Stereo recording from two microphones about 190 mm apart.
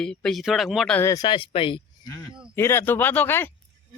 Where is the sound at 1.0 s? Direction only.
15° left (ahead or behind).